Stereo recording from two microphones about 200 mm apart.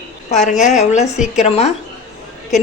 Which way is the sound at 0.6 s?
35° left (ahead or behind).